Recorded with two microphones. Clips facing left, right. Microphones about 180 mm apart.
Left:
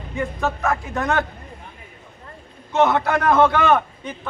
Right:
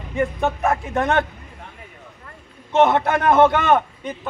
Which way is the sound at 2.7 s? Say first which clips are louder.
Right 2 dB; 25° right (ahead or behind).